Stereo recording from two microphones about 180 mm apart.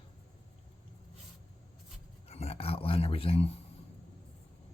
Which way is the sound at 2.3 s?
35° left (ahead or behind).